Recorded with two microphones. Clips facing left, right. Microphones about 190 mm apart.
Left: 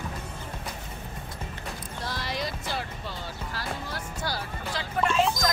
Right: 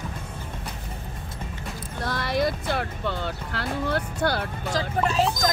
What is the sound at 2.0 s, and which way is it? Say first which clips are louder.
Speech: right 8 dB; 55° right (ahead or behind).